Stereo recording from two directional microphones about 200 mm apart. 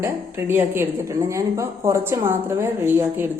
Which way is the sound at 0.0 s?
10° right (ahead or behind).